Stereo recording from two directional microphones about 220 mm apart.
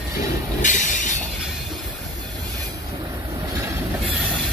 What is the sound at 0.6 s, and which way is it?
Train, 35° left (ahead or behind).